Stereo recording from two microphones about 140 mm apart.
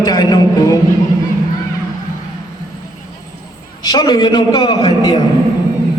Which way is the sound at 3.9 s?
30° left (ahead or behind).